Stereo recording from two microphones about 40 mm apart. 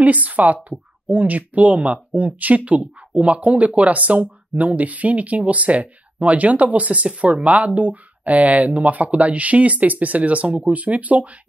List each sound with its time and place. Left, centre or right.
0.0 s speech: right